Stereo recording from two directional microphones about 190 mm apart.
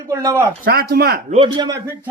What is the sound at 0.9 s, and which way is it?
Speech, 55° right (ahead or behind).